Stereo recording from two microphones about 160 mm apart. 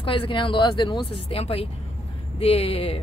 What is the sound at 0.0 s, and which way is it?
A man's voice, 30° left (ahead or behind).